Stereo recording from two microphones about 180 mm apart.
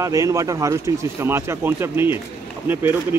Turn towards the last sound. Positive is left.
turn(degrees=-10)  # may be behind; listen again after turning